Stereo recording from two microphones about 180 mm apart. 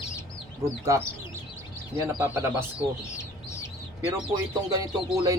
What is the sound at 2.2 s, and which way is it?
Speech, 15° right (ahead or behind).